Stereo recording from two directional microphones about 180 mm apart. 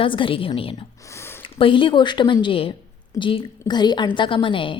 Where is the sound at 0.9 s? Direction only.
15° left (ahead or behind).